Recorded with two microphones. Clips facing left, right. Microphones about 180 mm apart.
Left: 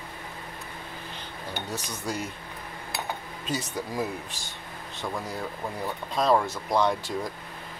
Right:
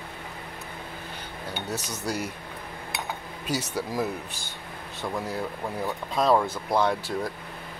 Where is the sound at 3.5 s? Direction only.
80° right.